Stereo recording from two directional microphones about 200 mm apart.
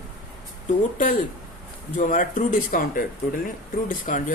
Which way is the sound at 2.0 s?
40° left (ahead or behind).